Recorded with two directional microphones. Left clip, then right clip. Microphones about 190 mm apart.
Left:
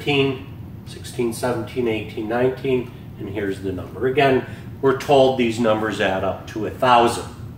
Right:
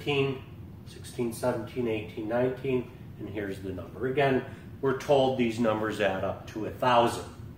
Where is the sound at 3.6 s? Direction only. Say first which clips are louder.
Left 10 dB; 20° right (ahead or behind).